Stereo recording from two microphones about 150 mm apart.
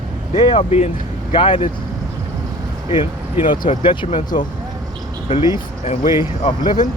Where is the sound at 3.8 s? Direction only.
35° left (ahead or behind).